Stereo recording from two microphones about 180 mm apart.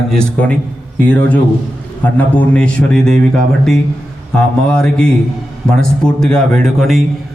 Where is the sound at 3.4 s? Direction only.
5° left (ahead or behind).